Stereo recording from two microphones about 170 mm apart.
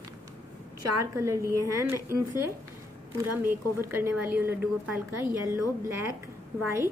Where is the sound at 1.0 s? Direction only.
15° right (ahead or behind).